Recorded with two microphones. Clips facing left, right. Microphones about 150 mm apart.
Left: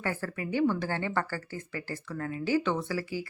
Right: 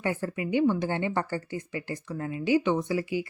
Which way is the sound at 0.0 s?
20° right (ahead or behind).